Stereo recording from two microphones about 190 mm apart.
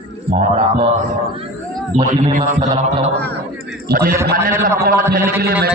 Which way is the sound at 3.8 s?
55° right (ahead or behind).